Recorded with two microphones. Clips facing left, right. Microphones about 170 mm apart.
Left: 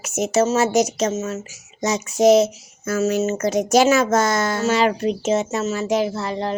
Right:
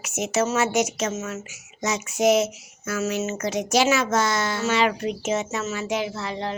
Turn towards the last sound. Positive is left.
turn(degrees=40)  # may be behind; listen again after turning